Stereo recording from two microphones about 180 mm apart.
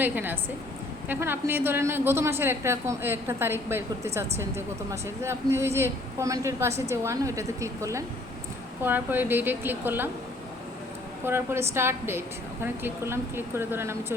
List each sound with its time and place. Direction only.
0.0 s a woman's voice: 10° right (ahead or behind)
11.3 s a woman's voice: 15° right (ahead or behind)